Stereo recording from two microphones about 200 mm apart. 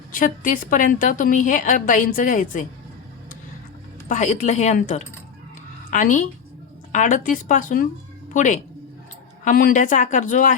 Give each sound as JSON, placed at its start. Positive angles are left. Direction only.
{"t": 0.1, "sound": "a woman's voice", "side_deg": 40}
{"t": 4.1, "sound": "a woman's voice", "side_deg": 40}